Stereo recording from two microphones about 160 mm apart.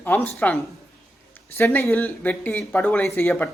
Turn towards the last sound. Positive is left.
turn(degrees=15)  # may be behind; listen again after turning